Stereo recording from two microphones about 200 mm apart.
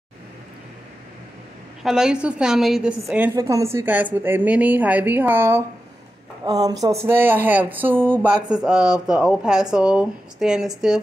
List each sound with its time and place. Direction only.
1.8 s speech: centre (ahead or behind)
3.3 s a woman's voice: 15° right (ahead or behind)